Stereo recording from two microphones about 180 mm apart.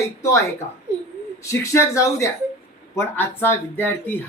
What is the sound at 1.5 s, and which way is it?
Speech, 15° left (ahead or behind).